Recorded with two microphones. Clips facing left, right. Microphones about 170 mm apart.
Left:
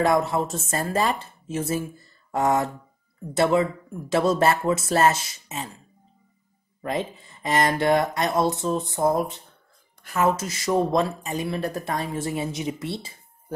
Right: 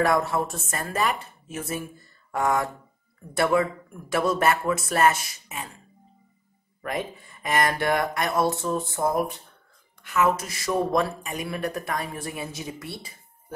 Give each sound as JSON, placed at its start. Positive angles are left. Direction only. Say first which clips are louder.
{"t": 0.0, "sound": "speech", "louder": "left 2 dB", "side_deg": 20}
{"t": 6.8, "sound": "speech", "louder": "left 3 dB", "side_deg": 25}